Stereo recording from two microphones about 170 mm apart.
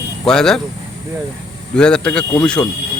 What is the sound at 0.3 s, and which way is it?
Speech, 5° left (ahead or behind).